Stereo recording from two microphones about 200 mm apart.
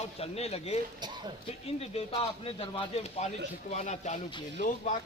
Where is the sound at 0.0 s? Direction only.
30° left (ahead or behind).